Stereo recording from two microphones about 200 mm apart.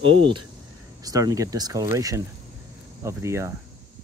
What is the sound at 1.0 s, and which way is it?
Speech, 15° right (ahead or behind).